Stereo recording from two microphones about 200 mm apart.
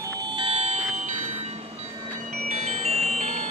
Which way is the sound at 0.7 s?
35° right (ahead or behind).